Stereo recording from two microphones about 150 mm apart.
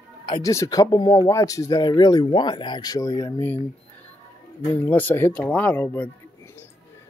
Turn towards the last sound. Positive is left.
turn(degrees=10)  # may be behind; listen again after turning